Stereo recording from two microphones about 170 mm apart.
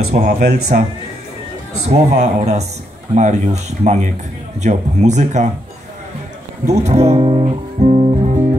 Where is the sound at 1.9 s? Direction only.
40° right (ahead or behind).